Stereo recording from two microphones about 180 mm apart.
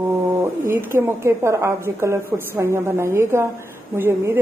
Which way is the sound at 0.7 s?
15° right (ahead or behind).